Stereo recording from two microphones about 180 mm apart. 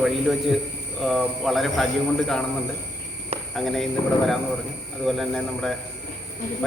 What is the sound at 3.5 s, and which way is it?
Speech, centre (ahead or behind).